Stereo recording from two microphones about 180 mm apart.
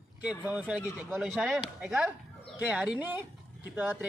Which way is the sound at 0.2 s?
5° right (ahead or behind).